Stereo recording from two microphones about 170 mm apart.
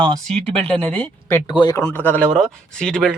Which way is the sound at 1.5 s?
25° left (ahead or behind).